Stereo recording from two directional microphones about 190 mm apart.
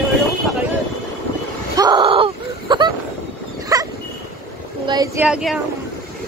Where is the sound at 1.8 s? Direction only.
25° right (ahead or behind).